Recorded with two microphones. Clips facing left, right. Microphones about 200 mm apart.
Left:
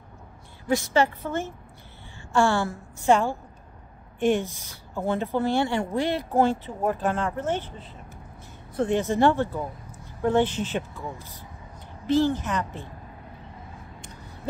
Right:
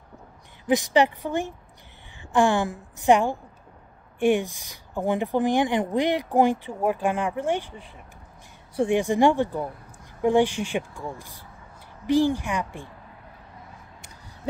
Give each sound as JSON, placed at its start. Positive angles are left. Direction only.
{"t": 0.7, "sound": "speech", "side_deg": -15}